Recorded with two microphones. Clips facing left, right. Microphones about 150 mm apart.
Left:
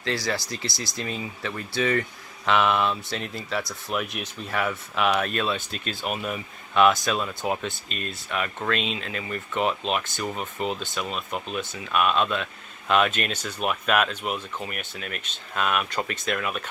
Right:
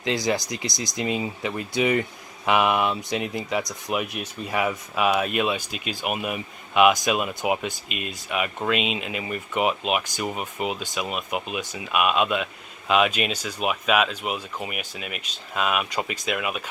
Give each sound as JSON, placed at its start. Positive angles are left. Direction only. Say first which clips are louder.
{"t": 0.0, "sound": "speech", "louder": "right 4 dB", "side_deg": -20}